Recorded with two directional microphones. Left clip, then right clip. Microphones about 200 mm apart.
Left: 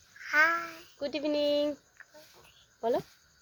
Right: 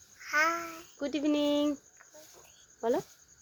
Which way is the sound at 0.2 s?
10° right (ahead or behind).